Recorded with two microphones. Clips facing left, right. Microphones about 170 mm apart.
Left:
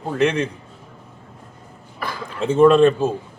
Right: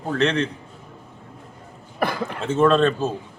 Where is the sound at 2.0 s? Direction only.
60° right (ahead or behind).